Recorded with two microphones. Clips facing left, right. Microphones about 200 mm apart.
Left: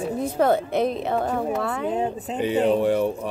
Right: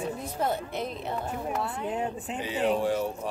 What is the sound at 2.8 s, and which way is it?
Speech, 60° left (ahead or behind).